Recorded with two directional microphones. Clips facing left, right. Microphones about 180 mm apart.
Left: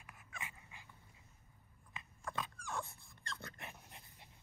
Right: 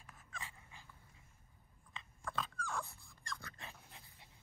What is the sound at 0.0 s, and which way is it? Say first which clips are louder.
Dog: even; 15° left (ahead or behind).